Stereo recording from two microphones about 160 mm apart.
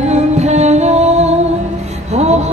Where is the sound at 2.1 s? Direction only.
45° right (ahead or behind).